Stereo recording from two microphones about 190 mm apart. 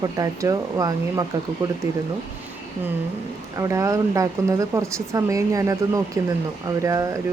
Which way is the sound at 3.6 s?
15° right (ahead or behind).